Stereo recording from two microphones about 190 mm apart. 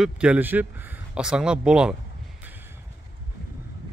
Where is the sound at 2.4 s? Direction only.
10° right (ahead or behind).